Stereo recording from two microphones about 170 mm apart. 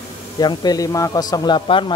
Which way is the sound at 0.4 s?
25° left (ahead or behind).